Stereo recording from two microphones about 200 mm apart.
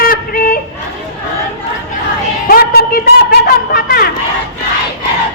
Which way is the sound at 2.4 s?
50° left (ahead or behind).